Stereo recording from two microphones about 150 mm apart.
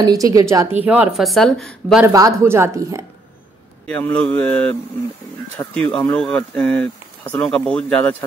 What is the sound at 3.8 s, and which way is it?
Speech, 10° left (ahead or behind).